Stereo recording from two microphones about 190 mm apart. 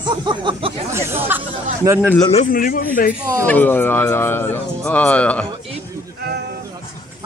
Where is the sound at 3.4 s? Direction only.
10° left (ahead or behind).